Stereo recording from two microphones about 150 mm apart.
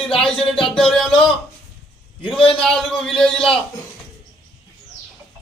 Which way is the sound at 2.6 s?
Centre (ahead or behind).